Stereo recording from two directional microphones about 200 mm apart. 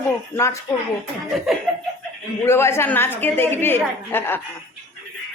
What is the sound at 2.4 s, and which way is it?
A woman's voice, 15° left (ahead or behind).